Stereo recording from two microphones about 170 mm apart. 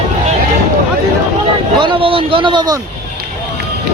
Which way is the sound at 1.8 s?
30° right (ahead or behind).